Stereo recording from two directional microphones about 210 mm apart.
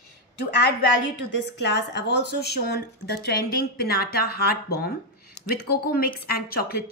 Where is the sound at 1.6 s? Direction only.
55° left (ahead or behind).